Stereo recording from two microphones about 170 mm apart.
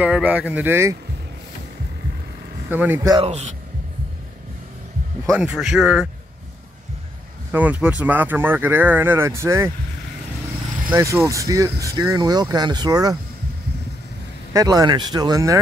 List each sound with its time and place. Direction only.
0.0 s speech: 10° right (ahead or behind)
2.7 s speech: 10° right (ahead or behind)
3.2 s a man's voice: 40° right (ahead or behind)
5.4 s speech: 5° right (ahead or behind)
7.5 s speech: 10° right (ahead or behind)
10.9 s speech: 15° right (ahead or behind)
14.5 s speech: 20° right (ahead or behind)